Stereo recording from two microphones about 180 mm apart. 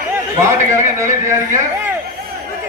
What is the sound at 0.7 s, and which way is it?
Speech, 15° right (ahead or behind).